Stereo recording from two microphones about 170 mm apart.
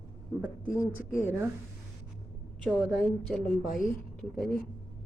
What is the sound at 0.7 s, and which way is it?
Speech, 15° left (ahead or behind).